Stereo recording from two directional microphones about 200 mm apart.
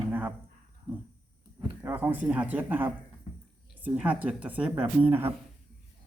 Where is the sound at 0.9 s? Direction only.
5° right (ahead or behind).